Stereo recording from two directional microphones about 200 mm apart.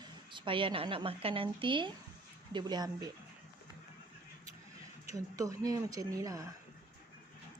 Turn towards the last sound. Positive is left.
turn(degrees=-15)  # may be behind; listen again after turning